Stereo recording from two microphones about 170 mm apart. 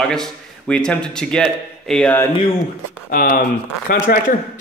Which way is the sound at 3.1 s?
55° left (ahead or behind).